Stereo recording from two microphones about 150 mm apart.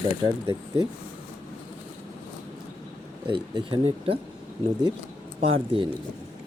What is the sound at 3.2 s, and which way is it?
Speech, 35° right (ahead or behind).